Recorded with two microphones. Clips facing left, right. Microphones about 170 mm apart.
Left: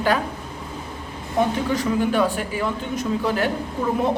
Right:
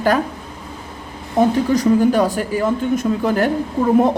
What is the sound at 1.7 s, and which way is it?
A woman's voice, 40° right (ahead or behind).